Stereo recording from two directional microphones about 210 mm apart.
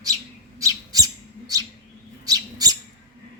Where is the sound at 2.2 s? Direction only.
15° right (ahead or behind).